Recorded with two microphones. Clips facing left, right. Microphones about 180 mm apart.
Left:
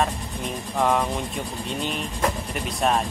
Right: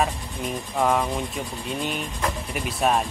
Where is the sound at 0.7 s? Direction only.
Centre (ahead or behind).